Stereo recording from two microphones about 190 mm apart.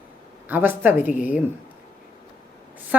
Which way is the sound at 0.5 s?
10° right (ahead or behind).